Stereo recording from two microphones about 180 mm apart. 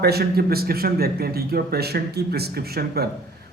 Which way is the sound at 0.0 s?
60° right (ahead or behind).